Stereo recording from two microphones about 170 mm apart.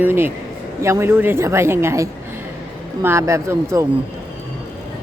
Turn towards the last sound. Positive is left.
turn(degrees=-15)  # may be behind; listen again after turning